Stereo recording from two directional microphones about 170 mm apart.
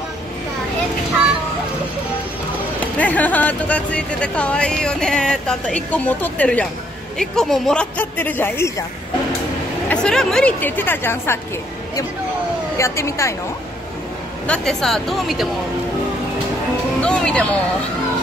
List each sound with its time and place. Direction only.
3.0 s speech: 10° left (ahead or behind)
9.8 s speech: 5° left (ahead or behind)
12.7 s speech: 15° left (ahead or behind)
14.5 s a woman's voice: 5° left (ahead or behind)
17.0 s music: 5° left (ahead or behind)